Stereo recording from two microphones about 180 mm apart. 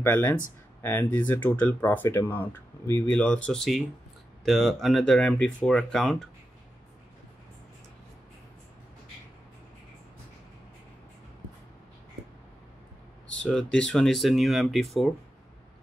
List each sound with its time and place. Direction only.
0.0 s speech: 10° left (ahead or behind)
13.4 s speech: 5° left (ahead or behind)